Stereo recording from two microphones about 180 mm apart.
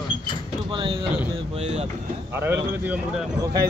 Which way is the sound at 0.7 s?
30° right (ahead or behind).